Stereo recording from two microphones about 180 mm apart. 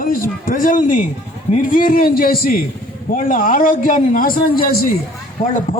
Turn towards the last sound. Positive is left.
turn(degrees=45)  # may be behind; listen again after turning